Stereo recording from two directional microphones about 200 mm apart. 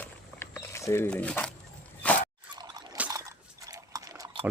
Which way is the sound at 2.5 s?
20° right (ahead or behind).